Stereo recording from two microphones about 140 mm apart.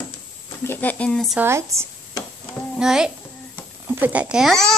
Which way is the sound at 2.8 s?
5° right (ahead or behind).